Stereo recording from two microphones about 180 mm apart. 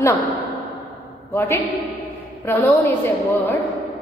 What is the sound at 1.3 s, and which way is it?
A woman's voice, 10° left (ahead or behind).